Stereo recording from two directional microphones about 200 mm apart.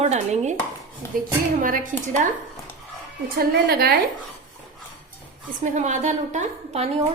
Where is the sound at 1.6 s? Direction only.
40° right (ahead or behind).